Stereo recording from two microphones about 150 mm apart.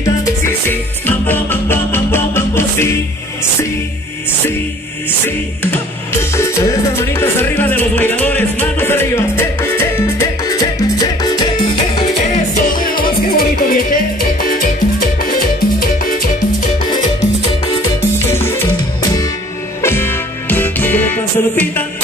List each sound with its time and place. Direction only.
0.0 s music: 20° left (ahead or behind)
6.3 s music: 20° left (ahead or behind)
12.5 s music: 65° left (ahead or behind)
18.2 s music: 15° left (ahead or behind)
19.8 s music: 15° left (ahead or behind)